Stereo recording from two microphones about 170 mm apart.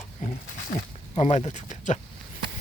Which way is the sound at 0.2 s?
50° left (ahead or behind).